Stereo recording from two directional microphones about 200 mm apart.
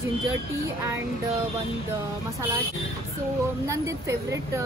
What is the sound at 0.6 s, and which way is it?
Speech, 15° right (ahead or behind).